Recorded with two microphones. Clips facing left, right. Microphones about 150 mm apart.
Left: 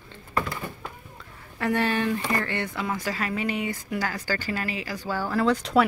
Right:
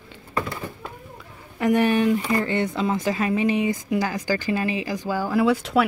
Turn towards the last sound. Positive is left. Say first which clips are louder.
# right 2 dB
turn(degrees=-5)  # may be behind; listen again after turning